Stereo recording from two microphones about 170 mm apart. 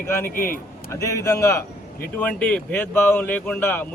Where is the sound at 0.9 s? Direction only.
20° left (ahead or behind).